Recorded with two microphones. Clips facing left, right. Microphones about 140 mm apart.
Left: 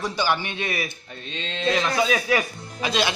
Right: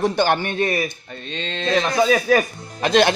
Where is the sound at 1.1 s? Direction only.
5° left (ahead or behind).